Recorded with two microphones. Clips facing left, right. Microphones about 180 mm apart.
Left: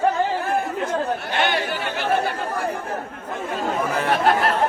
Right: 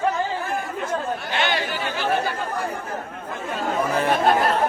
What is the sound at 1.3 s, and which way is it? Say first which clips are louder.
Speech: even; 50° left (ahead or behind).